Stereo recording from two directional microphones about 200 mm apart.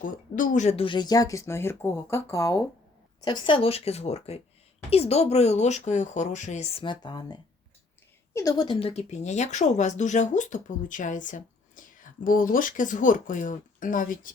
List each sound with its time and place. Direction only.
0.0 s a woman's voice: 40° left (ahead or behind)